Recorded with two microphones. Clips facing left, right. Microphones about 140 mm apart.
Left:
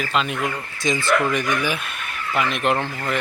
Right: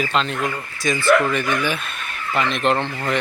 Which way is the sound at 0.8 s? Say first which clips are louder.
Right 3 dB; 20° left (ahead or behind).